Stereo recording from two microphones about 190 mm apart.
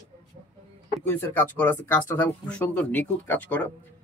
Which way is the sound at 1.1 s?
10° left (ahead or behind).